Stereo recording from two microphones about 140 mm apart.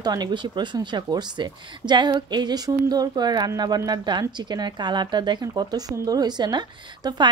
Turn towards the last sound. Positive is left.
turn(degrees=-30)  # may be behind; listen again after turning